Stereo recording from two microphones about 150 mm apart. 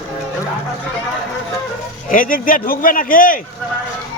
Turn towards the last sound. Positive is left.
turn(degrees=70)  # may be behind; listen again after turning